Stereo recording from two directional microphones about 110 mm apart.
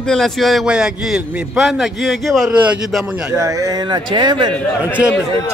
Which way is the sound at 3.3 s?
30° right (ahead or behind).